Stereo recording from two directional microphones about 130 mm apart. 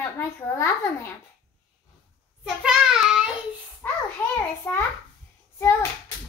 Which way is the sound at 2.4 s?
5° right (ahead or behind).